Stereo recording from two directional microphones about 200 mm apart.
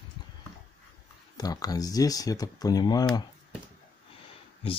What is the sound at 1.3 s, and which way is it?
Speech, 20° left (ahead or behind).